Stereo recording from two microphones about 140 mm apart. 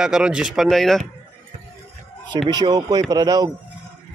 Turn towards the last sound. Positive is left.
turn(degrees=-25)  # may be behind; listen again after turning